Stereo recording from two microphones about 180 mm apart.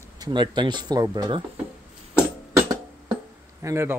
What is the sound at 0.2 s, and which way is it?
Speech, 25° right (ahead or behind).